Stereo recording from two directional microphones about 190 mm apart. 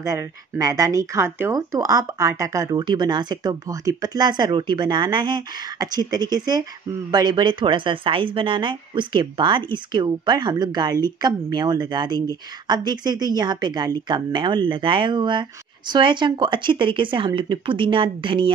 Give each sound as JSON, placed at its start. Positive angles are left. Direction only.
{"t": 0.0, "sound": "speech", "side_deg": -15}